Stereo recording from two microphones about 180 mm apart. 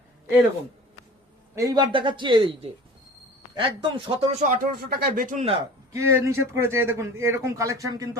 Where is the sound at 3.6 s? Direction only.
30° right (ahead or behind).